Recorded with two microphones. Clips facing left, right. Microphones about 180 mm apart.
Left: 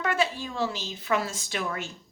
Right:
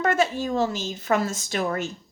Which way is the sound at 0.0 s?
45° right (ahead or behind).